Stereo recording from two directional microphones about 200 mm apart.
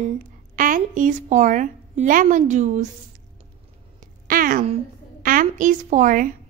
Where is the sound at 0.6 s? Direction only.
40° right (ahead or behind).